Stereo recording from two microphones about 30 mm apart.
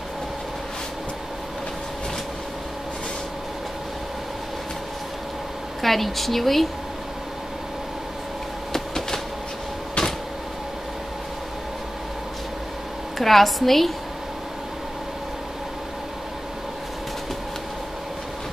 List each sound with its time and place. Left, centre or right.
5.8 s a woman's voice: centre
8.7 s train: centre
13.2 s a woman's voice: centre